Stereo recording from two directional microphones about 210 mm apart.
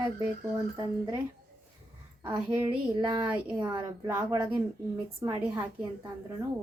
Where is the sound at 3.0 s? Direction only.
20° right (ahead or behind).